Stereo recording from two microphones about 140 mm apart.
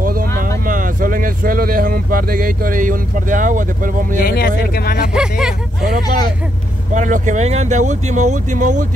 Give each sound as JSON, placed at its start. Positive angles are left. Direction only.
{"t": 0.0, "sound": "vehicle", "side_deg": -90}
{"t": 0.7, "sound": "speech", "side_deg": -80}
{"t": 4.2, "sound": "speech", "side_deg": 90}
{"t": 6.9, "sound": "speech", "side_deg": -60}